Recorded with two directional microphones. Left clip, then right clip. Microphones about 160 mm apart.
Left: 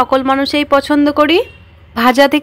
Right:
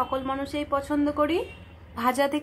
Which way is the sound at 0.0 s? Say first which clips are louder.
Left 16 dB; 40° left (ahead or behind).